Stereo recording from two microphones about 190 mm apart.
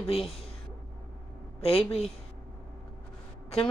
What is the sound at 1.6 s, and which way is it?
Speech, 30° left (ahead or behind).